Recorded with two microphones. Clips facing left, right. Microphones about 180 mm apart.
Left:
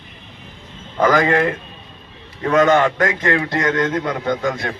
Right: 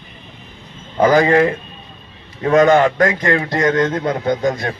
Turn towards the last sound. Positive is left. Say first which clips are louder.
# right 3 dB
turn(degrees=-35)  # may be behind; listen again after turning